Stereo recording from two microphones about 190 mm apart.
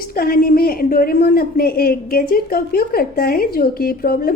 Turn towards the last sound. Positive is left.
turn(degrees=50)  # may be behind; listen again after turning